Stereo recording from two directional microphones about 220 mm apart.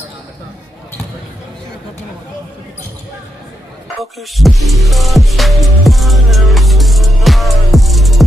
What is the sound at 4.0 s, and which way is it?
Music, centre (ahead or behind).